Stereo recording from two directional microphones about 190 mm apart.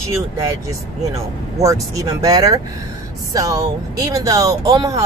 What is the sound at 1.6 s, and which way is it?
Speech, 15° right (ahead or behind).